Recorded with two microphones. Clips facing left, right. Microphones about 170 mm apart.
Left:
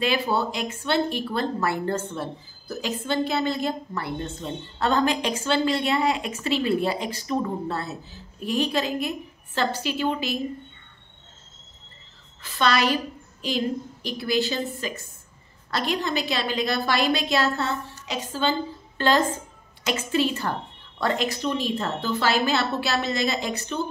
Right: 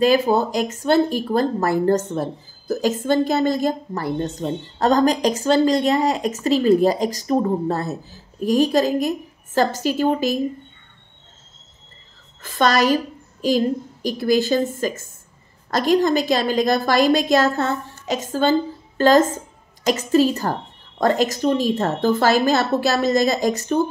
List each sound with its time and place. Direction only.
0.0 s a woman's voice: 45° right (ahead or behind)
12.4 s a woman's voice: 50° right (ahead or behind)